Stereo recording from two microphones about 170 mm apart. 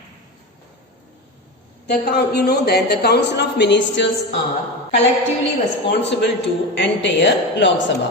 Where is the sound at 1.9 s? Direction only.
70° left (ahead or behind); by 4.0 s 90° left.